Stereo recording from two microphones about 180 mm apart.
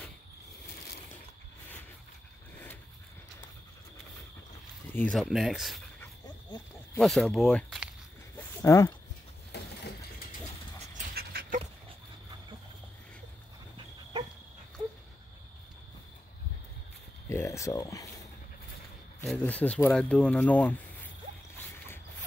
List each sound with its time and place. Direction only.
4.9 s speech: 5° left (ahead or behind)
7.0 s speech: centre (ahead or behind)
8.6 s speech: 15° left (ahead or behind)
9.5 s a sound: 70° left (ahead or behind)
11.1 s dog: 55° right (ahead or behind)
17.3 s a sound: 15° left (ahead or behind)
19.2 s speech: 5° left (ahead or behind)